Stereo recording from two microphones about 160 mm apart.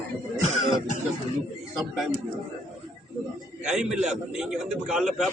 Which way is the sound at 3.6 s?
5° right (ahead or behind).